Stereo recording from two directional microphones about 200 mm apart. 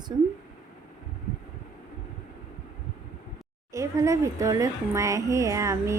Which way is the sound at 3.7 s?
15° right (ahead or behind).